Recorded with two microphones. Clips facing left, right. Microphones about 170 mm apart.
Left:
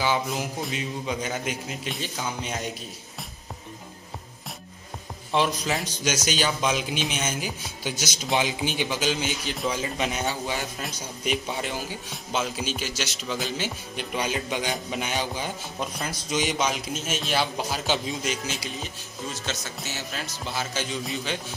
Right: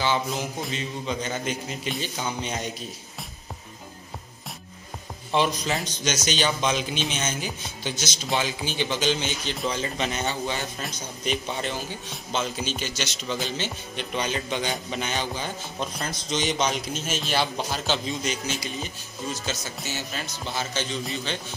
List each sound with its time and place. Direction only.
0.0 s a man's voice: 5° left (ahead or behind)
5.3 s a man's voice: centre (ahead or behind); by 8.8 s 15° left (ahead or behind)
8.8 s a man's voice: 5° left (ahead or behind)